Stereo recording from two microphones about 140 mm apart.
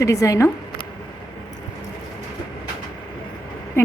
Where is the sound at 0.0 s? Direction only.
25° left (ahead or behind).